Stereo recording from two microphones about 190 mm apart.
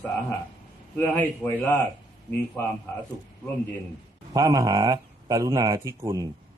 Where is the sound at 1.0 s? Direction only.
10° left (ahead or behind).